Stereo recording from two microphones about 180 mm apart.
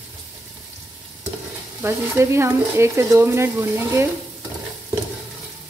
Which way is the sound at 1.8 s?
15° right (ahead or behind).